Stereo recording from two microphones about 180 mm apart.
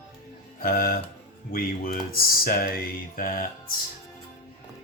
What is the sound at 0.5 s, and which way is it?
Speech, 55° left (ahead or behind).